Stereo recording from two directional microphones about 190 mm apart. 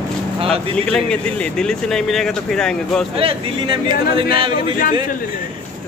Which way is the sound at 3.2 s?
25° right (ahead or behind).